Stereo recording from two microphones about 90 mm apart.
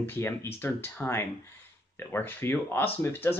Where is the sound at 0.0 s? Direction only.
25° left (ahead or behind).